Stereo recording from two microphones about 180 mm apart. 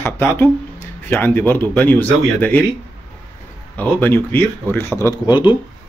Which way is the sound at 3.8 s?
10° left (ahead or behind).